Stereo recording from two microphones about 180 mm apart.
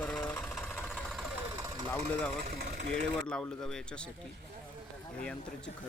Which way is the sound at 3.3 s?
5° left (ahead or behind).